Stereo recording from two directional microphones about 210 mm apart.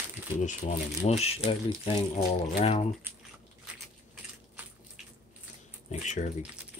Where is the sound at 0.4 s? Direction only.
35° left (ahead or behind).